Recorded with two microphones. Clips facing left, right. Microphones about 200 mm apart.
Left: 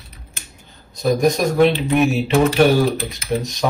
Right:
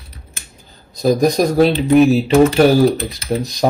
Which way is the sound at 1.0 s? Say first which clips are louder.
Right 3 dB; 35° right (ahead or behind).